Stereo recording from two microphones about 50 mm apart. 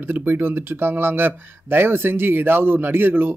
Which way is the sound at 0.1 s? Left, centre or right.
Right.